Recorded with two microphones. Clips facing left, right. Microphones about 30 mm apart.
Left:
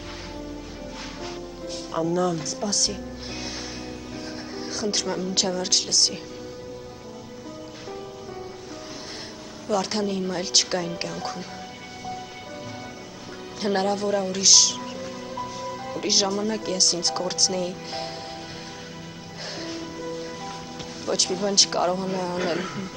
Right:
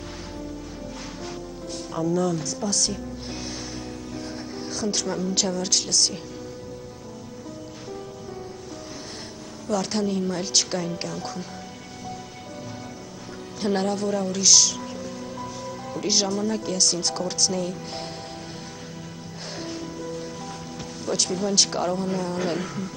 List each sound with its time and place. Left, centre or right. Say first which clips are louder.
1.2 s music: left 1 dB; centre
4.6 s a man's voice: left 1 dB; centre
9.7 s a man's voice: even; centre
13.6 s speech: left 1 dB; centre
19.6 s music: right 1 dB; centre
21.0 s a man's voice: left 1 dB; centre